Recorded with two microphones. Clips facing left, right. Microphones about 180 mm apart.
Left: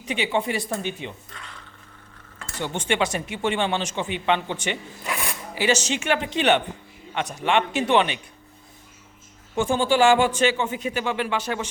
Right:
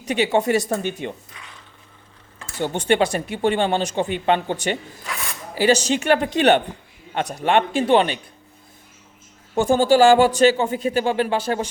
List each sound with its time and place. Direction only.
0.0 s speech: 40° right (ahead or behind)
2.6 s speech: 40° right (ahead or behind)
9.6 s speech: 40° right (ahead or behind)